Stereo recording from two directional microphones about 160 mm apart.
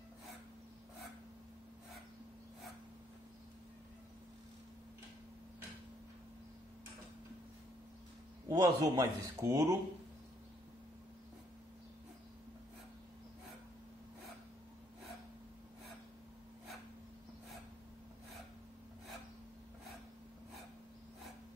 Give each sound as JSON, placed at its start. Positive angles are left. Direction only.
{"t": 8.5, "sound": "speech", "side_deg": -25}